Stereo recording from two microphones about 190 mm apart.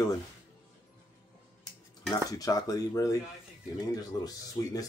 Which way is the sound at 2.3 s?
20° left (ahead or behind).